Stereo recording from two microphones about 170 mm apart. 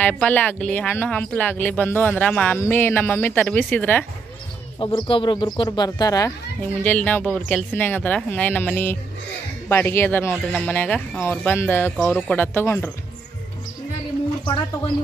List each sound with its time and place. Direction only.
0.2 s speech: 10° left (ahead or behind)
4.7 s speech: 30° left (ahead or behind)
6.6 s speech: 10° left (ahead or behind)